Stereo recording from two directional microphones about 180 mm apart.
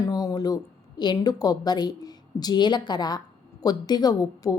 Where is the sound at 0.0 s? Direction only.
20° left (ahead or behind).